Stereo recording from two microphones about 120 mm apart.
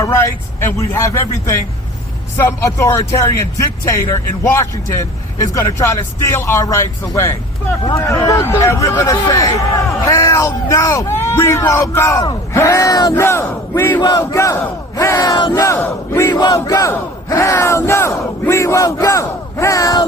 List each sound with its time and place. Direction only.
0.0 s battle cry: 25° left (ahead or behind)
4.1 s speech: 15° left (ahead or behind)
4.6 s battle cry: 25° left (ahead or behind)
14.0 s battle cry: 35° left (ahead or behind)
15.6 s battle cry: 25° left (ahead or behind)
16.3 s battle cry: 35° left (ahead or behind)